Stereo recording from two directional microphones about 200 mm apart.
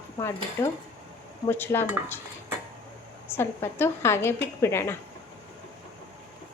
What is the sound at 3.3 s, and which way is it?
A woman's voice, 10° left (ahead or behind).